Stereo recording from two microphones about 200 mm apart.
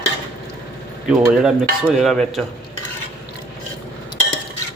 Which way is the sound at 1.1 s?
5° right (ahead or behind).